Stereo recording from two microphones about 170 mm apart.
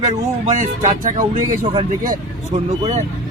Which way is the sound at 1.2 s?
20° right (ahead or behind).